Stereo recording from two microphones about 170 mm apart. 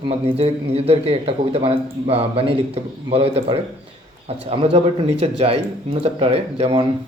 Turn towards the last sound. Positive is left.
turn(degrees=-35)  # may be behind; listen again after turning